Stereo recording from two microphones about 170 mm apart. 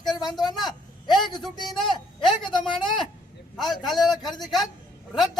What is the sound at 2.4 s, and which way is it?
Speech, 30° left (ahead or behind).